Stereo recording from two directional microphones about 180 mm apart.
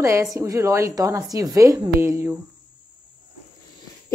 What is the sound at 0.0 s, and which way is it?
A woman's voice, 15° right (ahead or behind).